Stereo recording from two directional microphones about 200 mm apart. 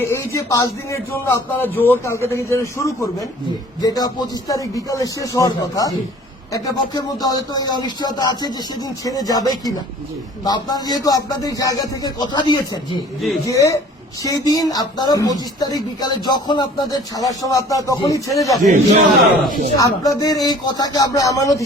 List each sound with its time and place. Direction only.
0.0 s a man's voice: 15° left (ahead or behind)
18.6 s a man's voice: 35° right (ahead or behind)
19.7 s speech: 15° left (ahead or behind)